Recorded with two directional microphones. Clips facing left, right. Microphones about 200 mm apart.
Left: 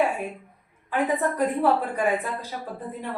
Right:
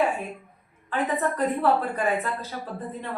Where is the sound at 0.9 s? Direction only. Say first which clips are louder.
Left 2 dB; 10° left (ahead or behind).